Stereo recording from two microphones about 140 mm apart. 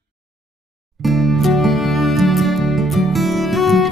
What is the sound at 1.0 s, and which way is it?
Music, centre (ahead or behind).